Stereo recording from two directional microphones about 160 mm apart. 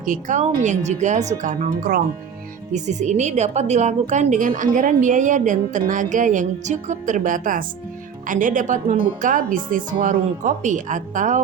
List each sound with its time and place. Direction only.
0.0 s a woman's voice: 55° right (ahead or behind)
2.7 s a woman's voice: 50° right (ahead or behind)